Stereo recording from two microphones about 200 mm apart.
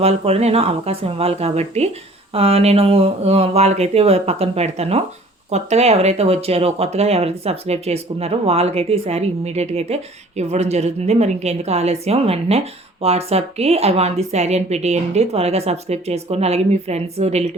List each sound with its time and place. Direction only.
0.0 s speech: 30° right (ahead or behind)